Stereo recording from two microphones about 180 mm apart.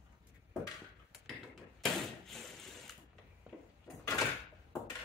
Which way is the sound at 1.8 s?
Centre (ahead or behind).